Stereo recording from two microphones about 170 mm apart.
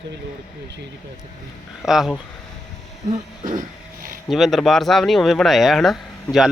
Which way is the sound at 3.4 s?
55° right (ahead or behind).